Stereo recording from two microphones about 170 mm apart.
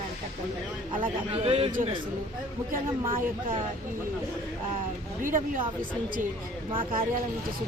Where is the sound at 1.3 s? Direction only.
35° right (ahead or behind).